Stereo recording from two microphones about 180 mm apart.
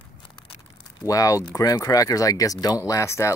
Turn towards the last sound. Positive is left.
turn(degrees=15)  # may be behind; listen again after turning